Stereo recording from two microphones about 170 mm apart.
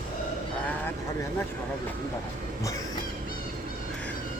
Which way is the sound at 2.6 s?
20° left (ahead or behind).